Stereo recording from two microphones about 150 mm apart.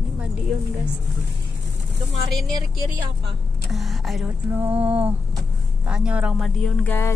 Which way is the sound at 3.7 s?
Centre (ahead or behind).